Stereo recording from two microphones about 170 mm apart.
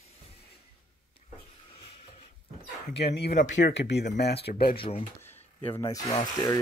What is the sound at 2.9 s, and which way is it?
Speech, 80° left.